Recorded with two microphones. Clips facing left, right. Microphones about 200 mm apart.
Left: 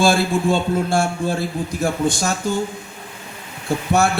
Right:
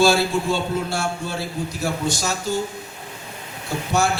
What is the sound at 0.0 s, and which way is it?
Speech, 50° left (ahead or behind).